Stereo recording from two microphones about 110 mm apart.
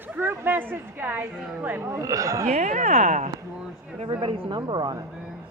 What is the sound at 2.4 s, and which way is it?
Speech, 90° right.